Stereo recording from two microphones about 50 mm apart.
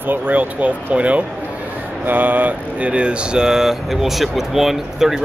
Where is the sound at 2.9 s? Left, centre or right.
Right.